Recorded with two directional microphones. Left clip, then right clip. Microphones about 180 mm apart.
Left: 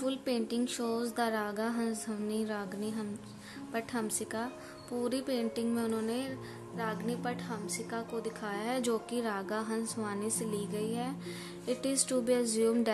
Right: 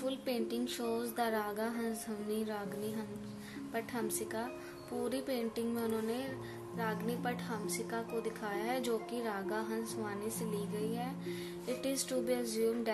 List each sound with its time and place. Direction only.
0.0 s a woman's voice: 20° left (ahead or behind)